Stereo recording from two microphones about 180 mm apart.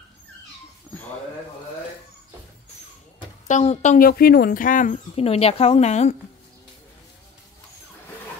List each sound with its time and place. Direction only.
3.4 s speech: 40° left (ahead or behind)